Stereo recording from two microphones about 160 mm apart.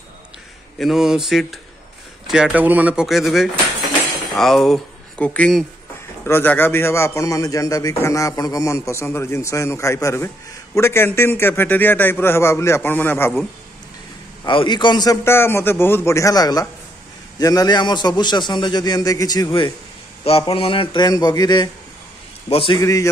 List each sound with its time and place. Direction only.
0.7 s a man's voice: centre (ahead or behind)
14.4 s a man's voice: 30° left (ahead or behind)
20.2 s a man's voice: 35° left (ahead or behind)
22.8 s a man's voice: 20° left (ahead or behind)